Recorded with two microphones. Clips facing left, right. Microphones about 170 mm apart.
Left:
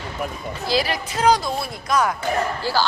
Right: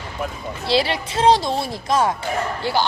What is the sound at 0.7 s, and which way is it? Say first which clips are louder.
Speech: right 3 dB; 30° right (ahead or behind).